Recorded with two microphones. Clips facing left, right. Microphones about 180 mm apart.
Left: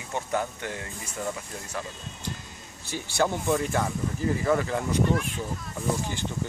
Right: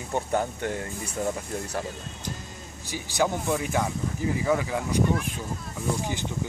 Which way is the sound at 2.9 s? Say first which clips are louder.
Even; 10° right (ahead or behind).